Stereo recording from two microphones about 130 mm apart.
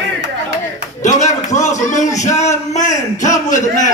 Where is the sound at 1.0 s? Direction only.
70° left (ahead or behind).